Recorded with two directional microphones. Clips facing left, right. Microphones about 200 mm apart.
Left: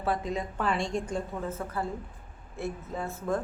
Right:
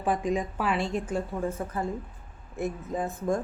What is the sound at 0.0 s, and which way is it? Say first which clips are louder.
A woman's voice: right 3 dB; 15° right (ahead or behind).